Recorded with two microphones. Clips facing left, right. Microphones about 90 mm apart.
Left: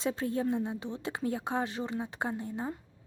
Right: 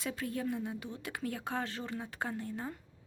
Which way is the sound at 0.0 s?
25° left (ahead or behind).